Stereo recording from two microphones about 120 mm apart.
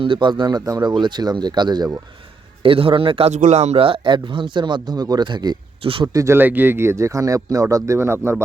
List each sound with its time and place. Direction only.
0.0 s speech: 45° right (ahead or behind)
2.6 s a man's voice: 50° right (ahead or behind)
3.3 s speech: 80° right; by 5.5 s 35° right (ahead or behind)
5.8 s a man's voice: 45° right (ahead or behind)
6.1 s speech: 20° right (ahead or behind)